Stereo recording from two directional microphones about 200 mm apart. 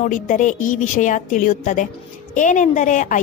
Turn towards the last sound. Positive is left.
turn(degrees=40)  # may be behind; listen again after turning